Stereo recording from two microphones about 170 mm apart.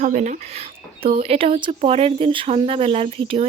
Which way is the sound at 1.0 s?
35° right (ahead or behind).